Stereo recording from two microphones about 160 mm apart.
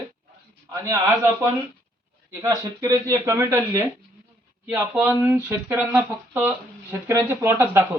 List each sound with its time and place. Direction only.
0.7 s speech: 20° right (ahead or behind)
2.4 s speech: 20° right (ahead or behind)